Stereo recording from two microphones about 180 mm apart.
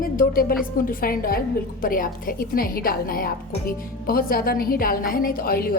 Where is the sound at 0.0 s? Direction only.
50° left (ahead or behind).